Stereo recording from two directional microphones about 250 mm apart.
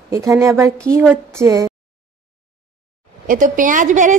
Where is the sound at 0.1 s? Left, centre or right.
Centre.